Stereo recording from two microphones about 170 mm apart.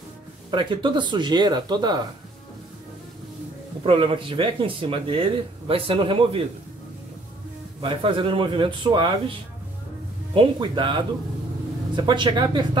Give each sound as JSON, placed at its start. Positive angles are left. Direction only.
{"t": 0.5, "sound": "a man's voice", "side_deg": -30}
{"t": 3.8, "sound": "speech", "side_deg": -30}
{"t": 7.8, "sound": "a man's voice", "side_deg": -30}